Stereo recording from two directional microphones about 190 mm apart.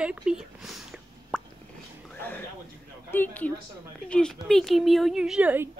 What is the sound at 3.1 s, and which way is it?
A woman's voice, 10° left (ahead or behind).